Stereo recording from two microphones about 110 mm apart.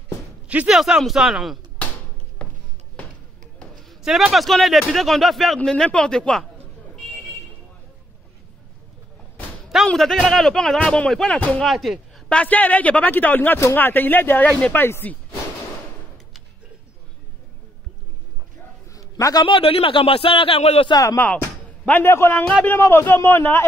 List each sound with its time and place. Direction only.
0.5 s a man's voice: 15° right (ahead or behind)
4.0 s a man's voice: 5° right (ahead or behind)
9.8 s speech: 5° left (ahead or behind)
11.6 s a man's voice: centre (ahead or behind)
12.3 s speech: 10° left (ahead or behind)
18.9 s a sound: 30° left (ahead or behind)
19.4 s speech: 55° left (ahead or behind)
20.9 s speech: 30° left (ahead or behind)
21.2 s a man's voice: 15° left (ahead or behind)